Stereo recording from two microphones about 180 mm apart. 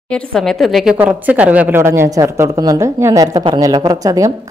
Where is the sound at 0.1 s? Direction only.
Centre (ahead or behind).